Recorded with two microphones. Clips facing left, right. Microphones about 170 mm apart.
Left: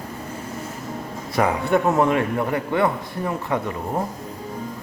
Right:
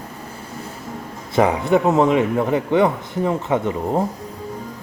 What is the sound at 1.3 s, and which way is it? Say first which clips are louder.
A man's voice: right 3 dB; 20° right (ahead or behind).